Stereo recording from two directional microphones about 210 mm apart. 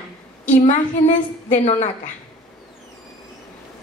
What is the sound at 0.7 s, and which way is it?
A woman's voice, 35° left (ahead or behind).